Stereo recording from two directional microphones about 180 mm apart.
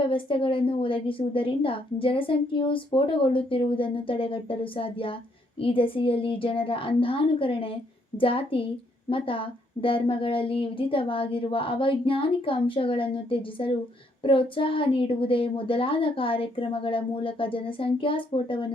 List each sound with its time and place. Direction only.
0.1 s a woman's voice: 30° left (ahead or behind)